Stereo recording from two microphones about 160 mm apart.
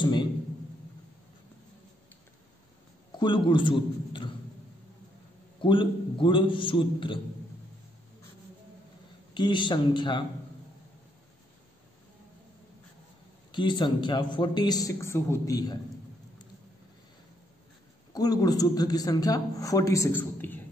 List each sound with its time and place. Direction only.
0.0 s a sound: 30° left (ahead or behind)
3.2 s a man's voice: 30° left (ahead or behind)
5.6 s a man's voice: 30° left (ahead or behind)
9.3 s a man's voice: 30° left (ahead or behind)
13.5 s a man's voice: 30° left (ahead or behind)
18.1 s a man's voice: 25° left (ahead or behind)